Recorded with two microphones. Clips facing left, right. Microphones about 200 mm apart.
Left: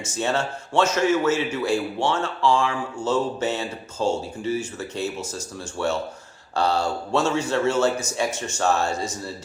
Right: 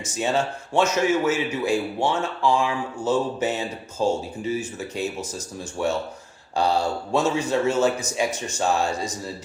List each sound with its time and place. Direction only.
0.2 s speech: 15° right (ahead or behind)